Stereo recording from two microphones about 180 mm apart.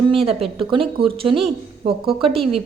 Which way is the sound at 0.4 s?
30° right (ahead or behind).